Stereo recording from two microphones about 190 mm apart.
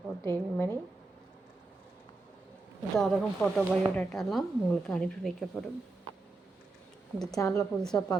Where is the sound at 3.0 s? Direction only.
Centre (ahead or behind).